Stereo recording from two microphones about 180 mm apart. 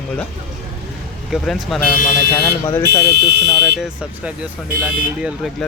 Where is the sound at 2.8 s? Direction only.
65° right (ahead or behind).